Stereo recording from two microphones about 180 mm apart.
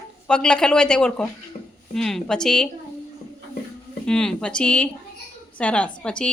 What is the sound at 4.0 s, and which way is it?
A woman's voice, 5° left (ahead or behind).